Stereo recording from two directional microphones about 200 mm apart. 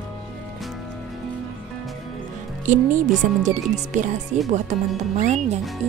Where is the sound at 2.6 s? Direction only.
40° right (ahead or behind).